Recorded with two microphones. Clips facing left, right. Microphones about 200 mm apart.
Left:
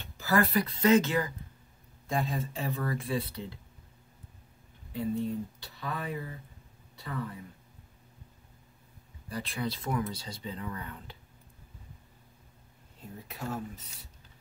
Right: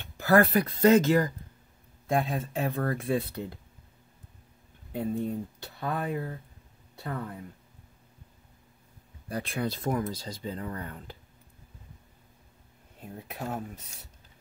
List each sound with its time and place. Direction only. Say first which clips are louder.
0.0 s speech: right 6 dB; 55° right (ahead or behind); by 1.3 s 40° right (ahead or behind)
2.0 s speech: right 4 dB; 60° right (ahead or behind)
4.9 s speech: right 1 dB; 50° right (ahead or behind)
9.3 s speech: right 3 dB; 50° right (ahead or behind)
13.3 s speech: right 1 dB; 55° right (ahead or behind)